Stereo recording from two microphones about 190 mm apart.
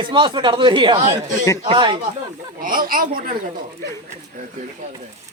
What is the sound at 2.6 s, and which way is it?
Speech, 45° right (ahead or behind).